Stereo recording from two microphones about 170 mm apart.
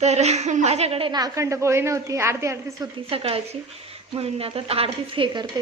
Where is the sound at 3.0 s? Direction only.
35° right (ahead or behind).